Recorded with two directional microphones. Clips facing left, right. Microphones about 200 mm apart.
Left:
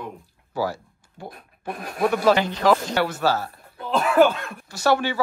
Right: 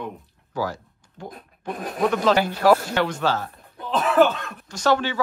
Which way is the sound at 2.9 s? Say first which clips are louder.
Left 1 dB; 10° left (ahead or behind).